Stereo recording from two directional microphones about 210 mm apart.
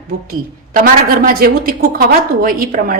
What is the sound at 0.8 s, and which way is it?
A woman's voice, 40° right (ahead or behind).